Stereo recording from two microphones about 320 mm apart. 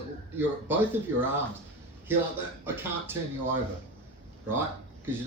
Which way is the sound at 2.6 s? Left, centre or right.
Centre.